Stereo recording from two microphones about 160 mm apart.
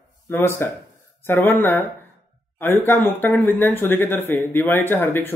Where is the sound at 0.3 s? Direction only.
15° left (ahead or behind).